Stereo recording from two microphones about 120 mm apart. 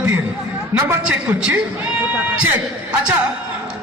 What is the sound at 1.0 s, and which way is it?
A man's voice, 10° right (ahead or behind).